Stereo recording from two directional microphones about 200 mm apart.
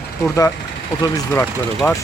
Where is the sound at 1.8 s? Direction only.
10° left (ahead or behind).